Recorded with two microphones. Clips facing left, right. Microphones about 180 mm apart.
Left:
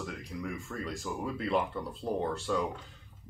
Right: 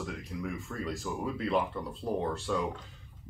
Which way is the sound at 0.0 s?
Centre (ahead or behind).